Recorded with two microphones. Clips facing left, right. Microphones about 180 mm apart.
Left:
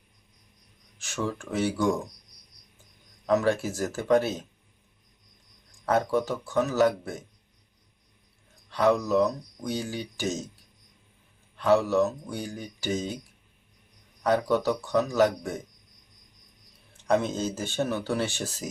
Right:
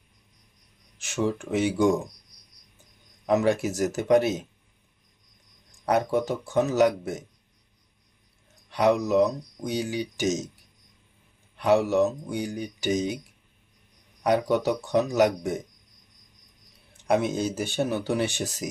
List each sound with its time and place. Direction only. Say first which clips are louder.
0.9 s speech: right 5 dB; 20° right (ahead or behind)
3.2 s speech: right 2 dB; 15° right (ahead or behind)
5.8 s speech: right 1 dB; 20° right (ahead or behind)
8.7 s speech: right 1 dB; 20° right (ahead or behind)
11.5 s speech: right 1 dB; 15° right (ahead or behind)
14.3 s speech: right 1 dB; 20° right (ahead or behind)
17.1 s speech: right 1 dB; 15° right (ahead or behind)